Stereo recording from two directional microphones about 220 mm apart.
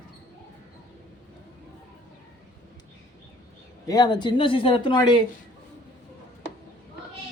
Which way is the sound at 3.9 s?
20° left (ahead or behind).